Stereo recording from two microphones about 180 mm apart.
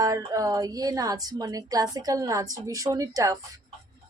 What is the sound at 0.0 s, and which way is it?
Speech, 20° right (ahead or behind).